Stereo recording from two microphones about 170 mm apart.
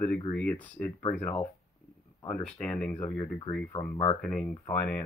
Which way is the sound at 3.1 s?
30° left (ahead or behind).